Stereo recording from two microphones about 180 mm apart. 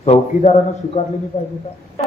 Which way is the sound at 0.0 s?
35° left (ahead or behind).